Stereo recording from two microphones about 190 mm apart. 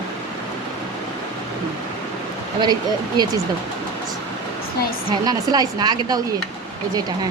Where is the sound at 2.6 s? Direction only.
20° right (ahead or behind).